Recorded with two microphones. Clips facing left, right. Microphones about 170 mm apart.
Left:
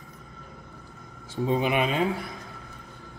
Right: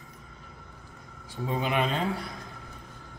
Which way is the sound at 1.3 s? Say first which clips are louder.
Left 4 dB; 20° left (ahead or behind).